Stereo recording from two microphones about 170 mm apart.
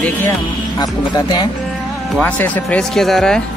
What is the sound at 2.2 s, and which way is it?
Speech, 10° left (ahead or behind).